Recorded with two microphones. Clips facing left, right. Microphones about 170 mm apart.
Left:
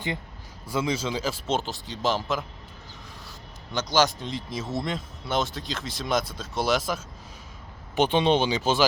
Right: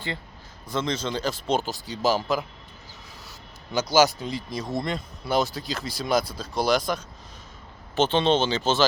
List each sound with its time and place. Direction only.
0.7 s speech: 10° left (ahead or behind)
3.7 s speech: 10° right (ahead or behind)
7.9 s speech: 15° left (ahead or behind)